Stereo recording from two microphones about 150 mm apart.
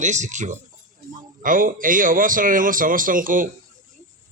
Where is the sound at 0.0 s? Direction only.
55° right (ahead or behind).